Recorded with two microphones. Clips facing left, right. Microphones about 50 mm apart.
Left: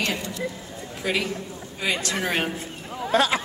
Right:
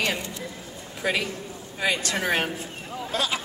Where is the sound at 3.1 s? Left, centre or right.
Left.